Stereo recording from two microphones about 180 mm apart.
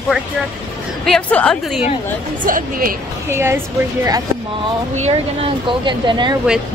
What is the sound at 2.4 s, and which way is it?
Speech, 50° right (ahead or behind).